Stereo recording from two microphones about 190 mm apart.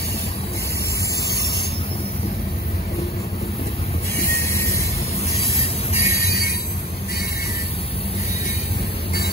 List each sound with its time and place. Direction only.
5.3 s music: 30° left (ahead or behind)